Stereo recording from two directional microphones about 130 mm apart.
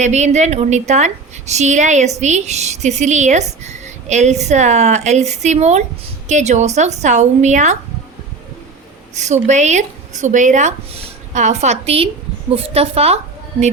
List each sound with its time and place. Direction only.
0.0 s a woman's voice: 60° right (ahead or behind)
9.1 s a woman's voice: 60° right (ahead or behind)